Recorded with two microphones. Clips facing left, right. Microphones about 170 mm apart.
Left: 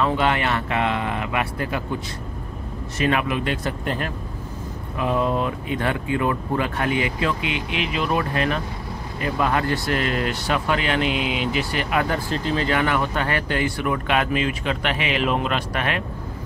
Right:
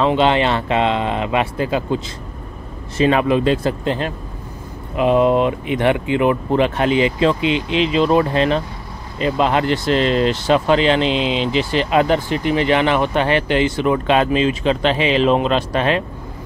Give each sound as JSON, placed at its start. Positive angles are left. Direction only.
{"t": 0.0, "sound": "speech", "side_deg": -25}
{"t": 3.0, "sound": "speech", "side_deg": -30}